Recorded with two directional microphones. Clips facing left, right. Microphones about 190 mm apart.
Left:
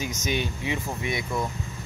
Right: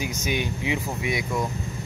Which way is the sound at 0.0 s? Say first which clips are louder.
Right 1 dB; 10° right (ahead or behind).